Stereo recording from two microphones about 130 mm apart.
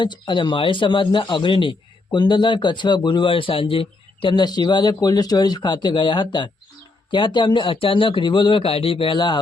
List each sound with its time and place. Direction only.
0.0 s a man's voice: 35° left (ahead or behind)